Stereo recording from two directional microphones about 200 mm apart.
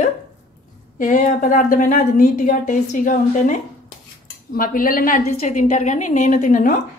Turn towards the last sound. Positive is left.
turn(degrees=40)  # may be behind; listen again after turning